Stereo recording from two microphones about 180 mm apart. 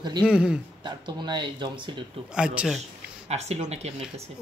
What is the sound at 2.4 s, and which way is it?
Speech, 5° right (ahead or behind).